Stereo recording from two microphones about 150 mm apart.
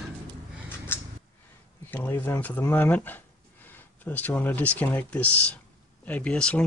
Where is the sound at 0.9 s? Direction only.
15° left (ahead or behind).